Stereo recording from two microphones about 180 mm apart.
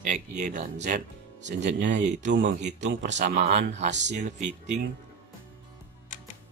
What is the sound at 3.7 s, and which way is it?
Speech, 40° right (ahead or behind).